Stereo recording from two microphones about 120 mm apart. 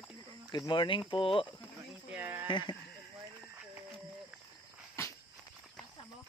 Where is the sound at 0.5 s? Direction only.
40° left (ahead or behind).